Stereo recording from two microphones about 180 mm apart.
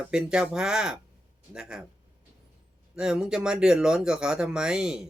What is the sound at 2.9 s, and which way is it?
Speech, 5° right (ahead or behind).